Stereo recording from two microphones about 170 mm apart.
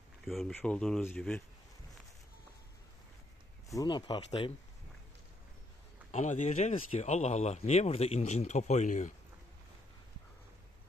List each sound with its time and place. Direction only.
0.2 s speech: centre (ahead or behind)
3.7 s speech: 25° left (ahead or behind)
6.1 s speech: 45° left (ahead or behind)